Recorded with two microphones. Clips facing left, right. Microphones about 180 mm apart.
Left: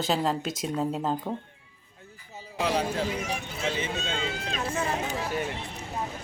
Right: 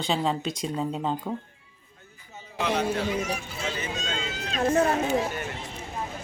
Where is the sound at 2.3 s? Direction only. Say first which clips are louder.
Even; 35° left (ahead or behind).